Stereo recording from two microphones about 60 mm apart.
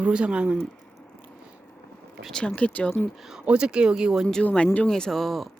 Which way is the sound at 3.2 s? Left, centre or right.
Centre.